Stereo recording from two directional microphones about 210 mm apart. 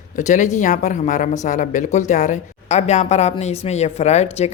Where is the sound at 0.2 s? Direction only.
35° left (ahead or behind).